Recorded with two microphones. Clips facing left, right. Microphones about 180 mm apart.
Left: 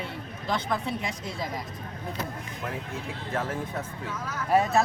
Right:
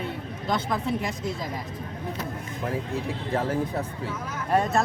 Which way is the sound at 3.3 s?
35° right (ahead or behind).